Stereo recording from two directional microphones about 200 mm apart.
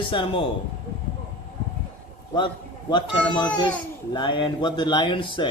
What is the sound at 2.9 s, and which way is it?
A man's voice, 20° left (ahead or behind).